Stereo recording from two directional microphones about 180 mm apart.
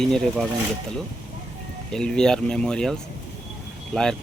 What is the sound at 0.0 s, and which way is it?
Speech, centre (ahead or behind).